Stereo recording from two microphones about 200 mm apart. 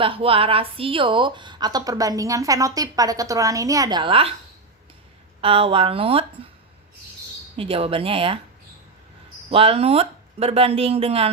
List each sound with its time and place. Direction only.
0.0 s a woman's voice: 25° right (ahead or behind)
5.4 s a woman's voice: 25° right (ahead or behind)
7.5 s a woman's voice: 30° right (ahead or behind)
9.5 s a woman's voice: 30° right (ahead or behind)